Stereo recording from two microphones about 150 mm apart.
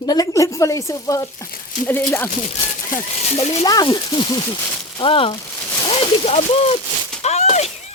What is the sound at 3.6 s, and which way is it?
Speech, 25° left (ahead or behind).